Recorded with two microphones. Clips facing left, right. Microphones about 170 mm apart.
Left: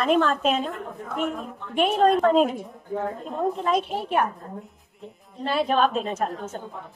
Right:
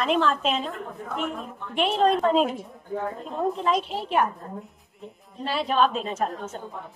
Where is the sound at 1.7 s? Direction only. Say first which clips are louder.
Left 2 dB; 50° left (ahead or behind).